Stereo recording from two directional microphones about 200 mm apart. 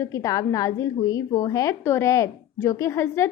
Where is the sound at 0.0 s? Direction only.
15° left (ahead or behind).